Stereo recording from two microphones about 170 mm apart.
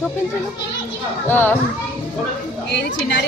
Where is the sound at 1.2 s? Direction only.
10° left (ahead or behind).